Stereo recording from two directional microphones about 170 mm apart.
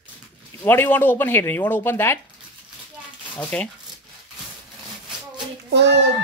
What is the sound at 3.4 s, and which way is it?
Speech, 10° left (ahead or behind).